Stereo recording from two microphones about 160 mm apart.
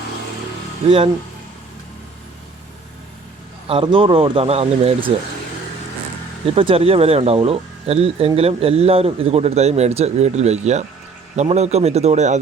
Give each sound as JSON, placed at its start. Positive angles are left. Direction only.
{"t": 0.9, "sound": "a man's voice", "side_deg": -35}
{"t": 3.7, "sound": "a man's voice", "side_deg": -35}
{"t": 6.6, "sound": "a man's voice", "side_deg": -35}